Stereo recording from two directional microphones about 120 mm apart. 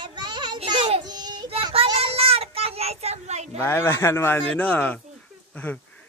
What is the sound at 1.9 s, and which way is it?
Child singing, 55° right (ahead or behind).